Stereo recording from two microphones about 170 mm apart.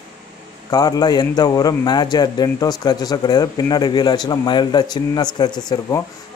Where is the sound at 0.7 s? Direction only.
20° left (ahead or behind).